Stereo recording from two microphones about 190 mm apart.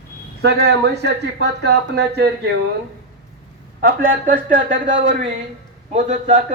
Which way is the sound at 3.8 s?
45° right (ahead or behind).